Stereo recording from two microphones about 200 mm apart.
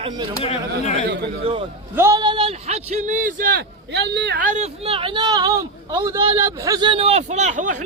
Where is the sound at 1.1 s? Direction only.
60° right (ahead or behind).